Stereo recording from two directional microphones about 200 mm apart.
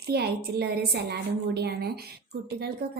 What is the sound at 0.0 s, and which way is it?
A woman's voice, 55° right (ahead or behind).